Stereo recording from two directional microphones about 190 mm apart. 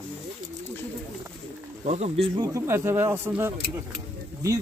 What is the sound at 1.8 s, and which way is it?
Speech, 35° right (ahead or behind).